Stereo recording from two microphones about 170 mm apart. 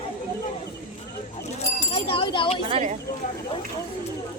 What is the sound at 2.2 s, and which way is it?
Speech, 30° left (ahead or behind).